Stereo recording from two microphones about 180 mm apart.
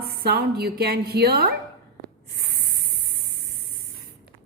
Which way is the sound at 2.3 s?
60° right (ahead or behind).